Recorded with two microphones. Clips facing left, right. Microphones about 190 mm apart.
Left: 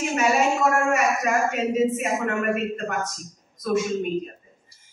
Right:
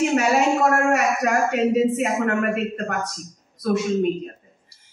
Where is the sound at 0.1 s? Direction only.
65° right (ahead or behind).